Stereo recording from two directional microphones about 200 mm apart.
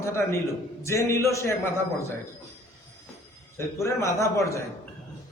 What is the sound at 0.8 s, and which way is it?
A man's voice, 15° left (ahead or behind).